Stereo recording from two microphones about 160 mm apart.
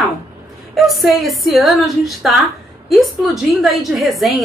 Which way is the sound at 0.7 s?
Centre (ahead or behind).